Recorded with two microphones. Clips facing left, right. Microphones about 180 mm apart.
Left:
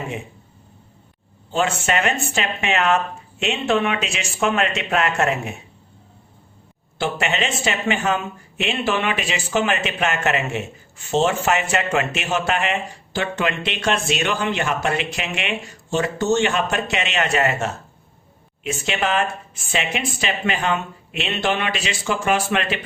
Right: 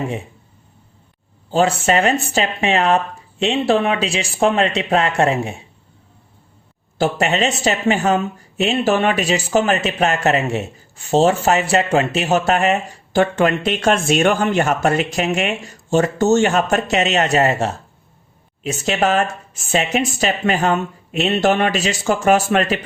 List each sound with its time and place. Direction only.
1.5 s speech: 35° right (ahead or behind)
7.0 s speech: 40° right (ahead or behind)